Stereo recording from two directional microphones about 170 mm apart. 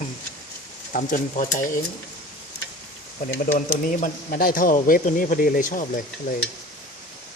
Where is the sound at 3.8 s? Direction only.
50° left (ahead or behind).